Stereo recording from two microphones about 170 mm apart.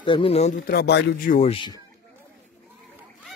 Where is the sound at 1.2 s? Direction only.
45° left (ahead or behind).